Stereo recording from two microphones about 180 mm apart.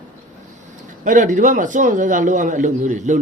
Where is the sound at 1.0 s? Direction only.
45° right (ahead or behind).